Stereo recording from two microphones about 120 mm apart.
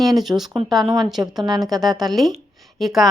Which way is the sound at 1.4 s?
35° right (ahead or behind).